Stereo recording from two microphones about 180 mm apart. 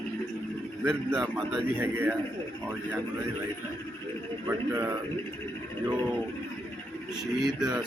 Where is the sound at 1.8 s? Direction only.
10° right (ahead or behind).